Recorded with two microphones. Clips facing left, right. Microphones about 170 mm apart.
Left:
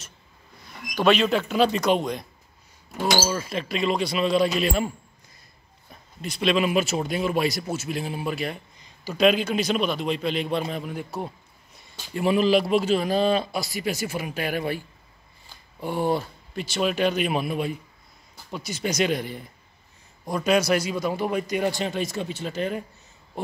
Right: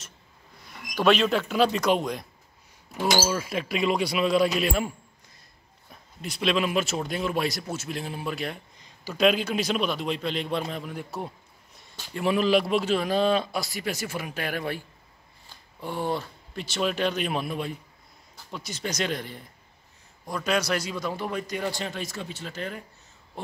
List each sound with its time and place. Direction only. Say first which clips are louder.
0.9 s speech: left 1 dB; centre (ahead or behind)
15.8 s a man's voice: left 5 dB; 10° left (ahead or behind)